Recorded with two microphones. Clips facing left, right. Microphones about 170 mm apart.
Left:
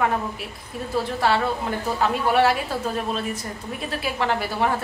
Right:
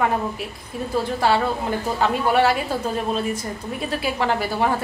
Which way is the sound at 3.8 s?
Centre (ahead or behind).